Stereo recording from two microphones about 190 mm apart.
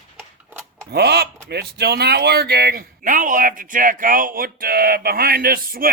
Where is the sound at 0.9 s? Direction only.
60° right (ahead or behind).